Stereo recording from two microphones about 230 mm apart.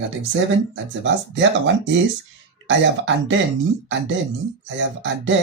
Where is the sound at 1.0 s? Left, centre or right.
Right.